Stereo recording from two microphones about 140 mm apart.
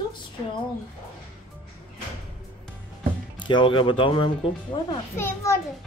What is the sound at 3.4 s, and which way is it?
Speech, 35° left (ahead or behind).